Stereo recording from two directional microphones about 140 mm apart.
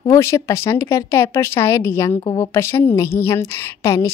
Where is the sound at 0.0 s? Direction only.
20° left (ahead or behind).